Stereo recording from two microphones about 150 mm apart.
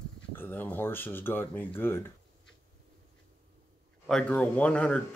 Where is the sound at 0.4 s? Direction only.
15° left (ahead or behind).